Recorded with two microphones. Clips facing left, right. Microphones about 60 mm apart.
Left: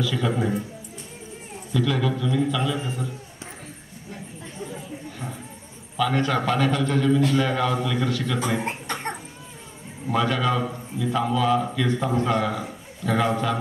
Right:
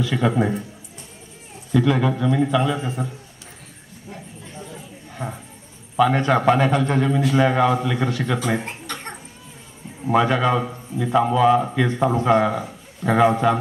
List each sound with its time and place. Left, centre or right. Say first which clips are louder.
0.0 s a man's voice: right 4 dB; right
1.7 s a man's voice: right 5 dB; right
5.1 s a sound: right 4 dB; right
5.9 s a man's voice: right 5 dB; right
8.5 s cough: left 1 dB; left
10.0 s a man's voice: right 5 dB; right